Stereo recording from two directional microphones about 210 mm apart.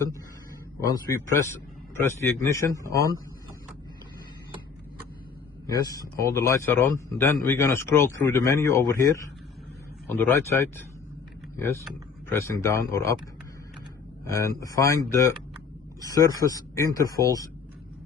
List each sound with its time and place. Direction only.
0.9 s a man's voice: 15° left (ahead or behind)
5.8 s a man's voice: 15° left (ahead or behind)
12.3 s a man's voice: 15° left (ahead or behind)
14.3 s a man's voice: 15° left (ahead or behind)